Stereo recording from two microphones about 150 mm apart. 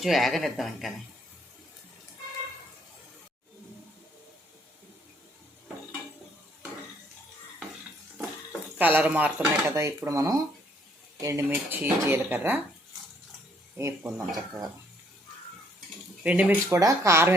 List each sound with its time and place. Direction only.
0.0 s speech: centre (ahead or behind)
8.8 s speech: 10° right (ahead or behind)
13.7 s speech: 15° right (ahead or behind)
16.2 s speech: 10° right (ahead or behind)